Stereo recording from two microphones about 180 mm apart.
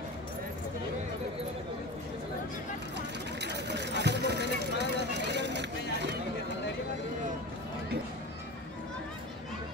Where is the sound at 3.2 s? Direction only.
70° right (ahead or behind).